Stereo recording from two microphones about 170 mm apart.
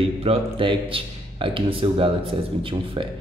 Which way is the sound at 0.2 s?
35° right (ahead or behind).